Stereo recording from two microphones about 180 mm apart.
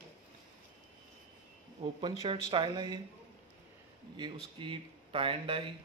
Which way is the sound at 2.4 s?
25° right (ahead or behind).